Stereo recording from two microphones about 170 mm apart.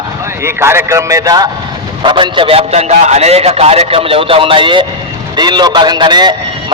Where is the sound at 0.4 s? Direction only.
15° right (ahead or behind).